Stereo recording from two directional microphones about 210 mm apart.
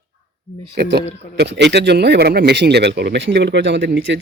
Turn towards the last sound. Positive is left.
turn(degrees=-60)  # may be behind; listen again after turning